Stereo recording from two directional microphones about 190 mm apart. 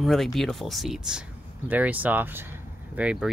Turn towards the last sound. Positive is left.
turn(degrees=-5)  # may be behind; listen again after turning